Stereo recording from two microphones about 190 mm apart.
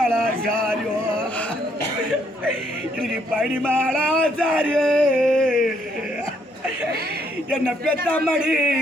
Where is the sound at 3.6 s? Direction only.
5° left (ahead or behind).